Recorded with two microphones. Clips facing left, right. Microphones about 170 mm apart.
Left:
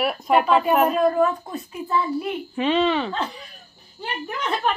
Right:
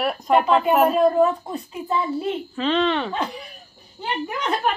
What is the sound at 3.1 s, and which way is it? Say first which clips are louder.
Speech: right 1 dB; 15° right (ahead or behind).